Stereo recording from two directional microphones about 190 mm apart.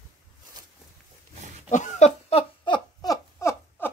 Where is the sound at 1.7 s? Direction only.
35° left (ahead or behind); by 3.9 s 15° left (ahead or behind).